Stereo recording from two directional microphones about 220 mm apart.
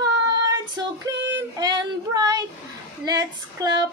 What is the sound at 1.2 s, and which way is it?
Child singing, 55° right (ahead or behind).